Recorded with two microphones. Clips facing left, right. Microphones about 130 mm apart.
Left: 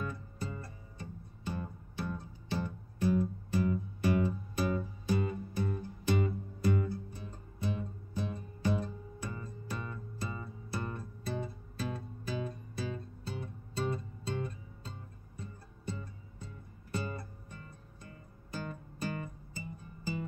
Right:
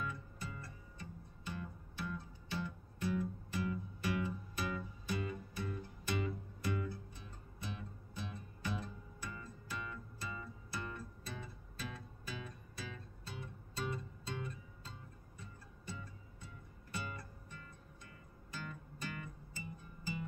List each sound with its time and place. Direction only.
0.0 s music: 40° left (ahead or behind)